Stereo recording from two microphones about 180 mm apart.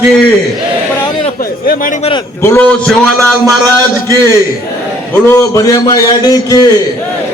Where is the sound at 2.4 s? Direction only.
15° left (ahead or behind).